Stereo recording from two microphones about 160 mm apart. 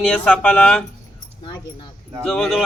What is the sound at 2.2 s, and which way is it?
Speech, 5° left (ahead or behind).